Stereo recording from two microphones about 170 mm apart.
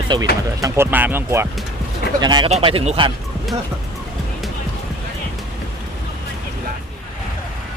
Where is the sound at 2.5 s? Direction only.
35° right (ahead or behind).